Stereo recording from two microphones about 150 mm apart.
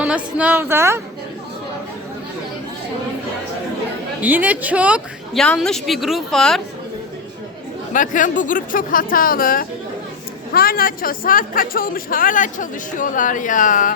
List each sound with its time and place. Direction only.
0.0 s a woman's voice: 10° right (ahead or behind)
4.2 s a woman's voice: 10° right (ahead or behind)
5.4 s a woman's voice: 5° left (ahead or behind)
7.9 s speech: 60° left (ahead or behind)
10.5 s speech: 85° left; by 13.9 s 60° left (ahead or behind)